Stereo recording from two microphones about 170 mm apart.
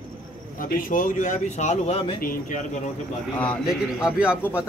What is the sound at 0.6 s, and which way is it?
Speech, 55° left (ahead or behind).